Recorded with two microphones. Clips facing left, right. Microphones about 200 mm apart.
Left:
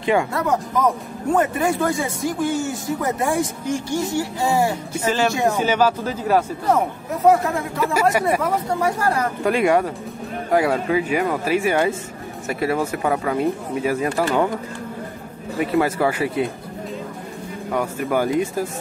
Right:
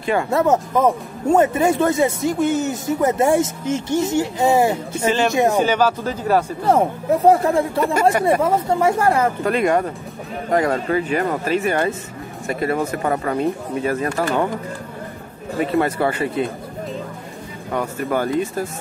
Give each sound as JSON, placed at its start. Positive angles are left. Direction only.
{"t": 0.0, "sound": "speech", "side_deg": 15}
{"t": 0.3, "sound": "speech", "side_deg": -25}
{"t": 5.6, "sound": "speech", "side_deg": 10}
{"t": 6.7, "sound": "speech", "side_deg": -30}
{"t": 7.8, "sound": "speech", "side_deg": 5}
{"t": 8.4, "sound": "speech", "side_deg": -25}
{"t": 9.4, "sound": "speech", "side_deg": 10}
{"t": 15.6, "sound": "speech", "side_deg": 5}
{"t": 17.7, "sound": "speech", "side_deg": 10}